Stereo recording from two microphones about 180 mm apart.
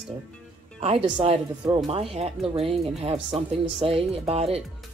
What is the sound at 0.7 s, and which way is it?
Speech, 30° right (ahead or behind).